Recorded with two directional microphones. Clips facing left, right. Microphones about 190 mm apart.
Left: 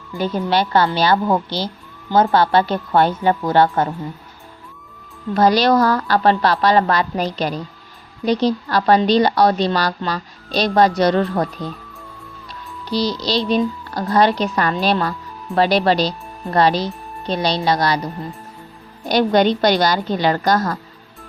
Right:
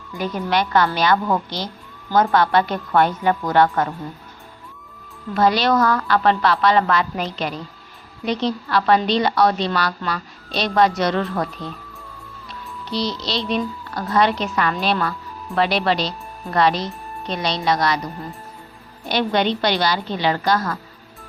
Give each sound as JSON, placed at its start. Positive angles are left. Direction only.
{"t": 0.2, "sound": "a woman's voice", "side_deg": 30}
{"t": 5.3, "sound": "a woman's voice", "side_deg": 40}
{"t": 12.9, "sound": "a woman's voice", "side_deg": 35}
{"t": 19.0, "sound": "a woman's voice", "side_deg": 40}